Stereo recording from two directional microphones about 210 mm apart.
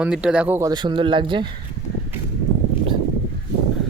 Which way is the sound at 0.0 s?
5° right (ahead or behind).